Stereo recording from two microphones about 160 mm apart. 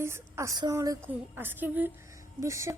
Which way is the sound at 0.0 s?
15° right (ahead or behind).